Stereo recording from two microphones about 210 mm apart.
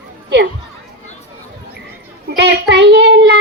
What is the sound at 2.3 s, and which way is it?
Child singing, 50° right (ahead or behind).